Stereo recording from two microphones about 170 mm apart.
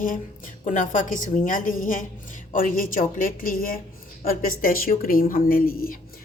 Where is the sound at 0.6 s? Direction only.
50° left (ahead or behind).